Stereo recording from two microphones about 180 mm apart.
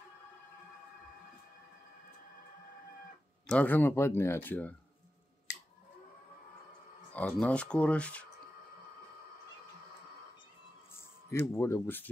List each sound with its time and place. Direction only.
3.4 s speech: 10° left (ahead or behind)
5.5 s a sound: 70° left (ahead or behind)
7.1 s speech: 10° left (ahead or behind)
10.9 s music: 15° left (ahead or behind)
11.5 s speech: 15° left (ahead or behind)